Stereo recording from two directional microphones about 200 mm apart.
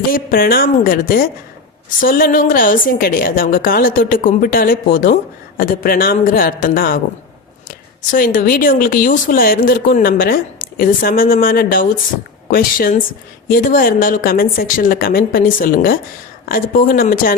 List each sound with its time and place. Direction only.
0.1 s speech: 45° left (ahead or behind)